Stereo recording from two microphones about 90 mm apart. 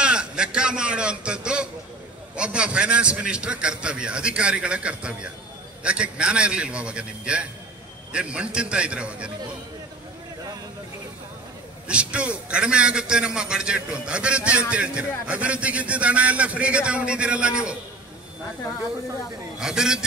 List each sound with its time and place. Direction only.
0.0 s a sound: 10° right (ahead or behind)
2.3 s a man's voice: 10° right (ahead or behind)
11.9 s a man's voice: 10° right (ahead or behind)
19.6 s a man's voice: 5° right (ahead or behind)